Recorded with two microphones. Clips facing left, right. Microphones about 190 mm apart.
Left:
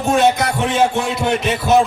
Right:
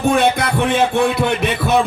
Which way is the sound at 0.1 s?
60° right (ahead or behind).